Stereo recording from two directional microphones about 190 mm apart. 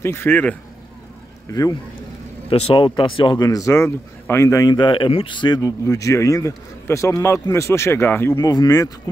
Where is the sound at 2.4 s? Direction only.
30° left (ahead or behind).